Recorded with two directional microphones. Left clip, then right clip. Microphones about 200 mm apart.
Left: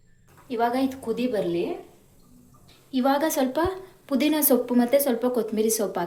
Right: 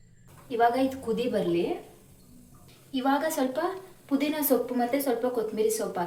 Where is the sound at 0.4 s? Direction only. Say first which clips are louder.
Right 1 dB; 45° left (ahead or behind).